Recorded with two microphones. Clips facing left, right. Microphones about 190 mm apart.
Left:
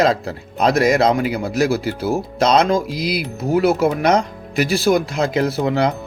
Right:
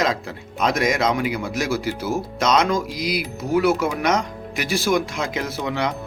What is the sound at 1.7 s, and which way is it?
Speech, 60° left (ahead or behind).